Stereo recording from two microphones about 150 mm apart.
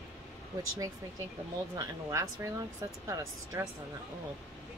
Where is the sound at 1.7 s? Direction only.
20° right (ahead or behind).